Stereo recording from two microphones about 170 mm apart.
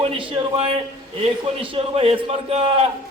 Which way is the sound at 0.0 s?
35° right (ahead or behind).